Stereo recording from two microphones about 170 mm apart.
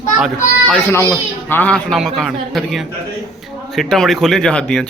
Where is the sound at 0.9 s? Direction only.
15° left (ahead or behind).